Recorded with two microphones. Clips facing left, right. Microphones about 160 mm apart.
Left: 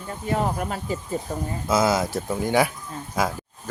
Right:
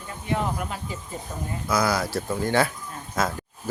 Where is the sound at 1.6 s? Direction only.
25° left (ahead or behind).